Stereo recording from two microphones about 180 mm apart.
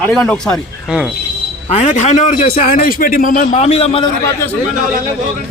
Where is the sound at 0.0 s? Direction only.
5° left (ahead or behind).